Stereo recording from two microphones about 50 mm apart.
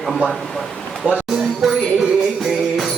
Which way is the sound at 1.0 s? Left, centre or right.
Right.